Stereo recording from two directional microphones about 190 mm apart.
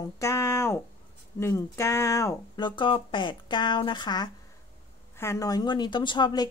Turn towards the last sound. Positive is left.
turn(degrees=20)  # may be behind; listen again after turning